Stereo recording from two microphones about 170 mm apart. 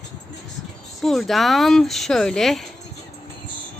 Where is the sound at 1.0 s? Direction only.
Centre (ahead or behind).